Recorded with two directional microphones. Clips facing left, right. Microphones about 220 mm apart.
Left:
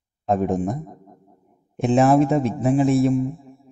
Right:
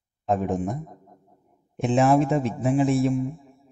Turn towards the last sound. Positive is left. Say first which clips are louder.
# left 3 dB
turn(degrees=40)  # may be behind; listen again after turning